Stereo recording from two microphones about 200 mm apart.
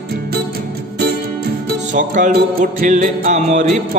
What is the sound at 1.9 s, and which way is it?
Music, 40° right (ahead or behind).